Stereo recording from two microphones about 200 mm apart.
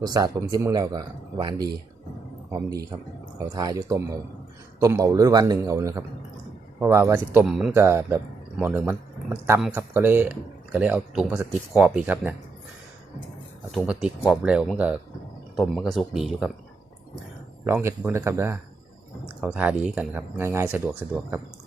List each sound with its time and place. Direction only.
0.0 s a man's voice: 20° right (ahead or behind)
13.7 s speech: centre (ahead or behind)
17.7 s speech: 10° right (ahead or behind)